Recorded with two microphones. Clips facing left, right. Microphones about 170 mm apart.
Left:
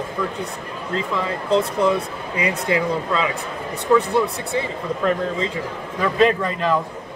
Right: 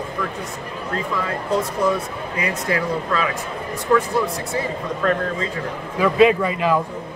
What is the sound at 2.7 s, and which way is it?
Speech, 25° left (ahead or behind).